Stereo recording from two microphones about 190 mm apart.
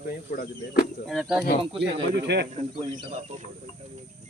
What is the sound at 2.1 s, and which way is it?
Speech, 60° right (ahead or behind).